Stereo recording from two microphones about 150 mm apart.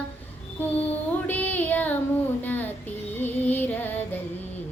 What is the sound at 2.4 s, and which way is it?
Female singing, 10° left (ahead or behind).